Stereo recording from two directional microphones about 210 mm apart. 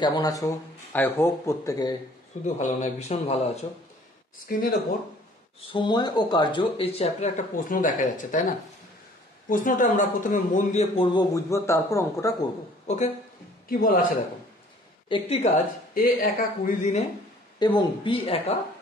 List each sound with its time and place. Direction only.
0.0 s a man's voice: 20° left (ahead or behind)
2.4 s speech: 35° left (ahead or behind)
4.5 s speech: 40° left (ahead or behind)
5.7 s speech: 20° left (ahead or behind)
11.1 s a man's voice: 15° left (ahead or behind)
12.8 s a man's voice: 35° left (ahead or behind)
15.0 s speech: 25° left (ahead or behind)
15.9 s speech: 40° left (ahead or behind)
17.6 s speech: 20° left (ahead or behind)